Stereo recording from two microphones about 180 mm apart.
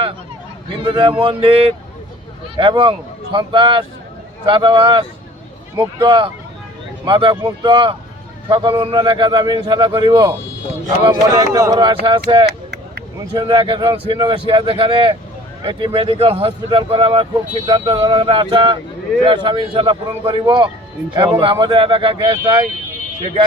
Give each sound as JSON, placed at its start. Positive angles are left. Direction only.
{"t": 0.8, "sound": "speech", "side_deg": -25}
{"t": 2.6, "sound": "speech", "side_deg": -30}
{"t": 17.9, "sound": "speech", "side_deg": -15}
{"t": 18.2, "sound": "speech", "side_deg": -30}